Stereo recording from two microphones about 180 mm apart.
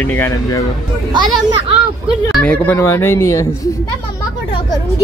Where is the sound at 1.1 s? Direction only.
25° right (ahead or behind).